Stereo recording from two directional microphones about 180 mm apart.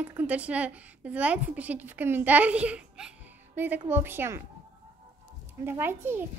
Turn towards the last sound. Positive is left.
turn(degrees=-10)  # may be behind; listen again after turning